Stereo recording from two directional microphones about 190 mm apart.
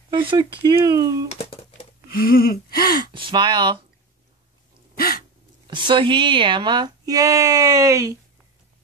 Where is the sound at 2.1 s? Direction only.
50° left (ahead or behind).